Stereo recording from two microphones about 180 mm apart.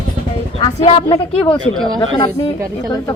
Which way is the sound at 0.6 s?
30° left (ahead or behind).